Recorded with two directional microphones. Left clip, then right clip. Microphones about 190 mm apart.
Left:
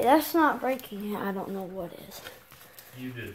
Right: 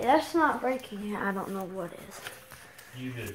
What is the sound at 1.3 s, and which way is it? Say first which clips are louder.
Speech: even; 10° left (ahead or behind).